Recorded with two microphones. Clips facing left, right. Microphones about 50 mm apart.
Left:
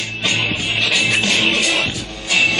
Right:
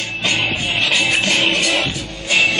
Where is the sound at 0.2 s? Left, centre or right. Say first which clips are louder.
Even; right.